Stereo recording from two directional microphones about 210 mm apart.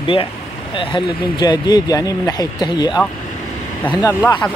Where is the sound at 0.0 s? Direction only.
25° left (ahead or behind).